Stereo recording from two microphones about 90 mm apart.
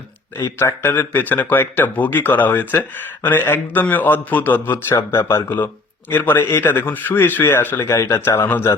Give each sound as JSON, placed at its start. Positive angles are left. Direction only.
{"t": 0.6, "sound": "a man's voice", "side_deg": 25}